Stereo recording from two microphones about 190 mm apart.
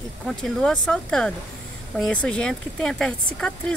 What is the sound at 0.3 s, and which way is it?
Speech, 5° left (ahead or behind).